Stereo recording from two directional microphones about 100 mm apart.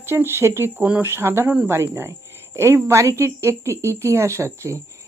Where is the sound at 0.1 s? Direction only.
25° right (ahead or behind).